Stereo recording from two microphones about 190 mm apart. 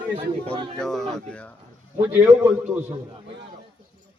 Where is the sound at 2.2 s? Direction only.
5° right (ahead or behind).